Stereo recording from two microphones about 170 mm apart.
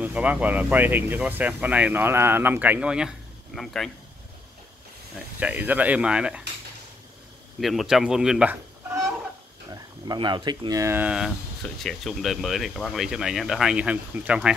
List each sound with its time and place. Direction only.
0.0 s speech: 10° right (ahead or behind)
5.4 s speech: 10° right (ahead or behind)
7.6 s speech: centre (ahead or behind)
9.7 s speech: 25° right (ahead or behind); by 14.5 s 5° right (ahead or behind)